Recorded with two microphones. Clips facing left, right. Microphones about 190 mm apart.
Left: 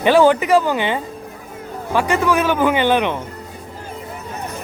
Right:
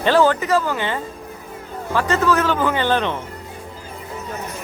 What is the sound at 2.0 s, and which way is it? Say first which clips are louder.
Speech: left 1 dB; 15° left (ahead or behind).